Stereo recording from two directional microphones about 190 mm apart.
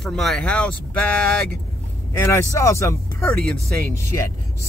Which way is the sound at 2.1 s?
15° left (ahead or behind).